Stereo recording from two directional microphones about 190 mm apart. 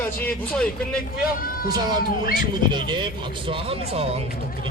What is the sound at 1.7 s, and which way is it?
Speech, 20° right (ahead or behind).